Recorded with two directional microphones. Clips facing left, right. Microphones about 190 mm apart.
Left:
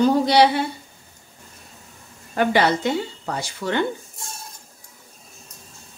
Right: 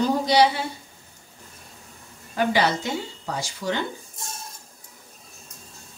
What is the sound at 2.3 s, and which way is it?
A woman's voice, 60° left (ahead or behind).